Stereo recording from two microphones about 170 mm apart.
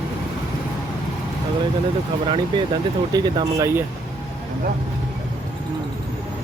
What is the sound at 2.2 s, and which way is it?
Speech, 30° right (ahead or behind).